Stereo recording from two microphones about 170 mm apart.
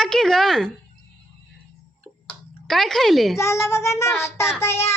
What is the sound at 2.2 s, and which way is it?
Clicking, centre (ahead or behind).